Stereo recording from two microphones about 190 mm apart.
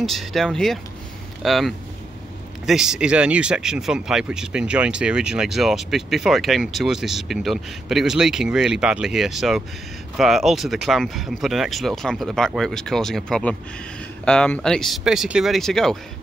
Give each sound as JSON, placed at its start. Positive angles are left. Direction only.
{"t": 0.0, "sound": "speech", "side_deg": 0}